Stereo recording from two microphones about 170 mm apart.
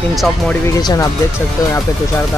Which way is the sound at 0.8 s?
25° left (ahead or behind).